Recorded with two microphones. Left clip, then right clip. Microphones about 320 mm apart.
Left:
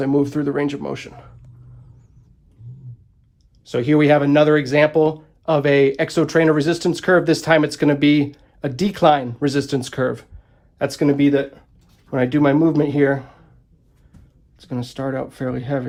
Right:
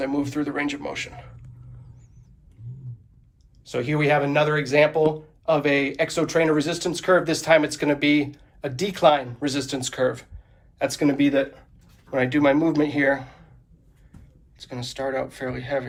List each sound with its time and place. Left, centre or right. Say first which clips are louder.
0.0 s speech: left 6 dB; left
3.7 s speech: left 6 dB; left
14.7 s speech: left 2 dB; left